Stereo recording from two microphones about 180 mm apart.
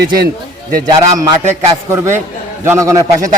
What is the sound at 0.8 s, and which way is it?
A man's voice, 20° right (ahead or behind).